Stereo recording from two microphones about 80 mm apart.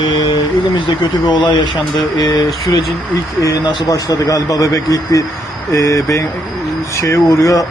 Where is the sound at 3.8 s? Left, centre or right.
Left.